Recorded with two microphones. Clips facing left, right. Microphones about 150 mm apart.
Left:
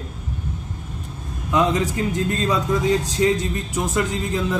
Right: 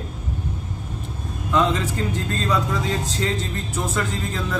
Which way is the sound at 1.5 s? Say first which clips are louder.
Left 1 dB; 15° left (ahead or behind).